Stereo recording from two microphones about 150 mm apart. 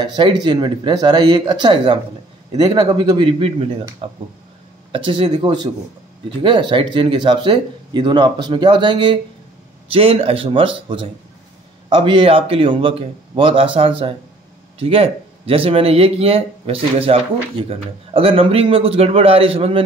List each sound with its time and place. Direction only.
0.0 s speech: 30° right (ahead or behind)